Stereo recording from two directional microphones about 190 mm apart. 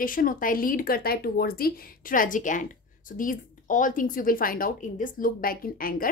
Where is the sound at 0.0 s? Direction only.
45° left (ahead or behind).